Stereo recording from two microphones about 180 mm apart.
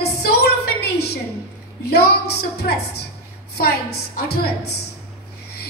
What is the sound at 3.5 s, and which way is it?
Speech, 65° left (ahead or behind).